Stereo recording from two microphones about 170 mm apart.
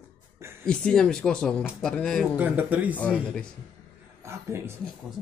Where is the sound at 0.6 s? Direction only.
5° left (ahead or behind).